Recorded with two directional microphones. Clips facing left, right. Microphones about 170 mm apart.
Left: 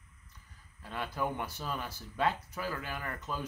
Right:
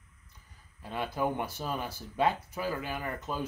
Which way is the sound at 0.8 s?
20° right (ahead or behind).